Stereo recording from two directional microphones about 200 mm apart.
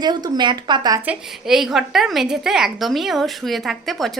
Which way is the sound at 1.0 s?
5° right (ahead or behind).